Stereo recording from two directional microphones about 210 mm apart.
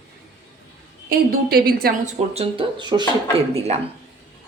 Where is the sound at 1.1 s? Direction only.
45° right (ahead or behind).